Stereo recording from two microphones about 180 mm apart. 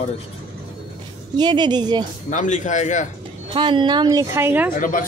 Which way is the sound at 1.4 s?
25° right (ahead or behind).